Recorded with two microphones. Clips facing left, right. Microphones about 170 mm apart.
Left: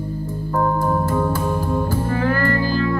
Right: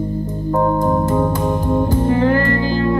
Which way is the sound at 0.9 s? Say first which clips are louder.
Right 3 dB; 15° right (ahead or behind).